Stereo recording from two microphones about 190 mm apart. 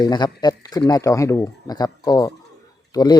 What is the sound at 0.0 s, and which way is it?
Speech, 20° left (ahead or behind).